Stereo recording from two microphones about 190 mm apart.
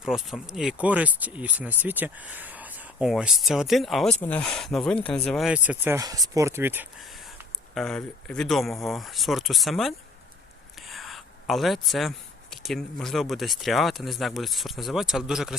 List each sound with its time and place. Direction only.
0.0 s speech: 5° right (ahead or behind)
7.8 s speech: 5° left (ahead or behind)